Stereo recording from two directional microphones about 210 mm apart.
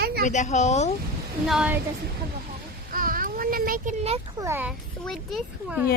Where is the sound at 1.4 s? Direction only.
5° right (ahead or behind).